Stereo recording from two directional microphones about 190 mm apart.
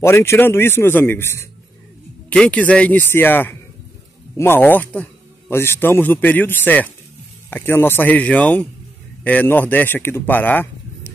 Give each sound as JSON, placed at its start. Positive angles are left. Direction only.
{"t": 0.0, "sound": "a man's voice", "side_deg": 15}